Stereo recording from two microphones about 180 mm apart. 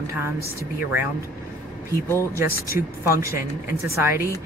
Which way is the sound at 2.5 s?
55° left (ahead or behind).